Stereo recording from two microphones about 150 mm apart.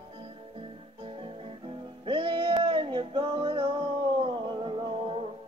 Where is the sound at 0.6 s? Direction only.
35° right (ahead or behind).